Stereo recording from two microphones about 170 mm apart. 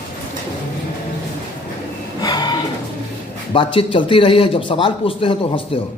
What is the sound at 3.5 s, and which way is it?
A man's voice, 30° left (ahead or behind).